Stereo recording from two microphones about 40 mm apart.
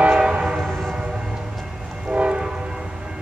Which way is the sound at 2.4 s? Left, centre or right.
Centre.